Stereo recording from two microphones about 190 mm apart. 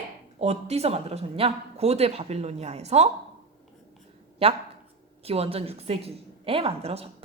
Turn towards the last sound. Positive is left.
turn(degrees=-30)  # may be behind; listen again after turning